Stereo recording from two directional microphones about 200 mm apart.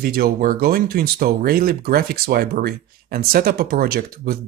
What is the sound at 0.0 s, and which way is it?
Speech, 50° right (ahead or behind).